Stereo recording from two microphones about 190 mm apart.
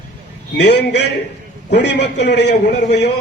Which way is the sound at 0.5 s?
65° left (ahead or behind).